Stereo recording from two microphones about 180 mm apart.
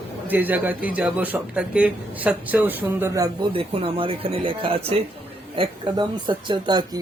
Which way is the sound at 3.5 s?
30° right (ahead or behind).